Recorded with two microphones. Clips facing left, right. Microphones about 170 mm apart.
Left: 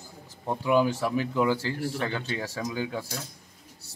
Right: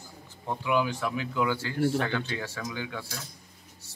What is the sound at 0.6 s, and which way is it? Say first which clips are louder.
Speech: left 4 dB; 40° left (ahead or behind).